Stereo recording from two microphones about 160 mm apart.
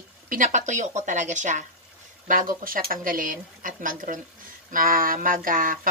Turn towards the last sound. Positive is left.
turn(degrees=-60)  # may be behind; listen again after turning